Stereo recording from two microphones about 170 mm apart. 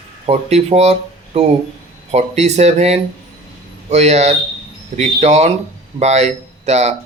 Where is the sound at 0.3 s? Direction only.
40° right (ahead or behind).